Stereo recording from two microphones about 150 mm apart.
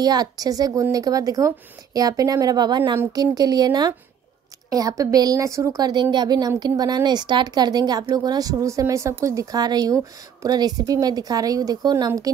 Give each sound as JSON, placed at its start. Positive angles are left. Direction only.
{"t": 0.0, "sound": "a woman's voice", "side_deg": -25}